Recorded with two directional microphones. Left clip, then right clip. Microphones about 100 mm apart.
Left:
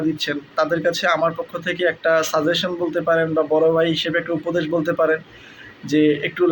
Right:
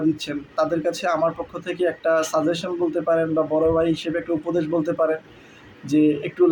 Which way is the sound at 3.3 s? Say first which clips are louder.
Left 3 dB; 15° left (ahead or behind).